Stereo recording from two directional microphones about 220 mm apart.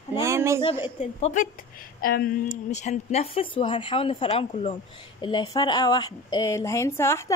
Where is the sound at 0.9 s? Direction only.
35° left (ahead or behind).